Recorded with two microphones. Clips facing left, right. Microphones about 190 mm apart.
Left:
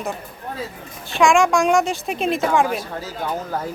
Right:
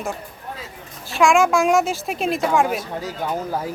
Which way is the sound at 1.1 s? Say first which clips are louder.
Even; centre (ahead or behind).